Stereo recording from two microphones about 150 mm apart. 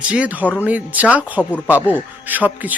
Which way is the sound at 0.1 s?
10° right (ahead or behind).